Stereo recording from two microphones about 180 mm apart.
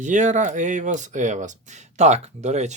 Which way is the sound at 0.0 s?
40° right (ahead or behind).